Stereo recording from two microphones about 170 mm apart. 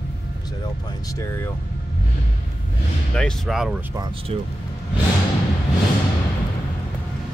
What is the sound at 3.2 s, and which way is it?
Speech, centre (ahead or behind).